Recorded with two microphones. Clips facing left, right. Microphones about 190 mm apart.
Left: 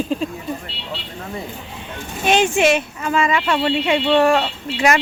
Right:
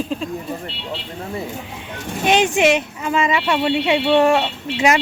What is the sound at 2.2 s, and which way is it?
Speech, 15° right (ahead or behind).